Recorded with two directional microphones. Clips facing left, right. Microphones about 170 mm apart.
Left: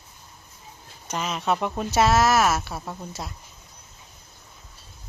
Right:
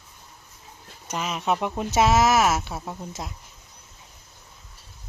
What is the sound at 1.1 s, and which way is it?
Speech, 5° right (ahead or behind).